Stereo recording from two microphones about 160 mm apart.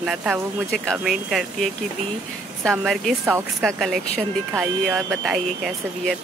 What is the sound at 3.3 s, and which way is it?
A woman's voice, 15° right (ahead or behind).